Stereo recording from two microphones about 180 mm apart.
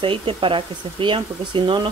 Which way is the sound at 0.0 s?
30° right (ahead or behind).